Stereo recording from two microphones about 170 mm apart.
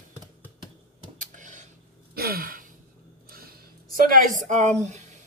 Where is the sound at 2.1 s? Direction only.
65° right (ahead or behind).